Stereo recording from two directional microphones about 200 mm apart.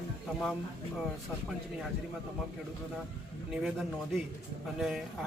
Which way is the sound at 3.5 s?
Centre (ahead or behind).